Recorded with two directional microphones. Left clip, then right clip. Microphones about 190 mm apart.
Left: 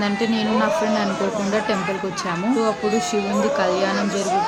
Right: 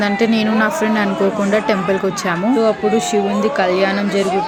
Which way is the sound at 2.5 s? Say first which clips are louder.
Right 5 dB; 15° right (ahead or behind).